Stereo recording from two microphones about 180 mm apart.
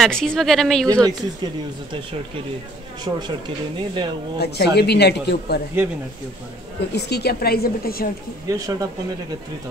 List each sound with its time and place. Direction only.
0.0 s speech: 5° left (ahead or behind)
1.0 s speech: 25° right (ahead or behind)
4.4 s speech: 65° left (ahead or behind)
6.9 s speech: 65° left (ahead or behind)
8.5 s speech: 20° right (ahead or behind)